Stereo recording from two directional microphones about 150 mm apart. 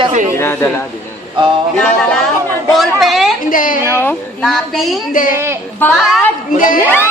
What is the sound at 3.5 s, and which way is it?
Speech, 65° left (ahead or behind).